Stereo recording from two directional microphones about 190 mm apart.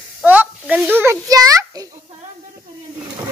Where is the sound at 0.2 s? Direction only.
10° right (ahead or behind).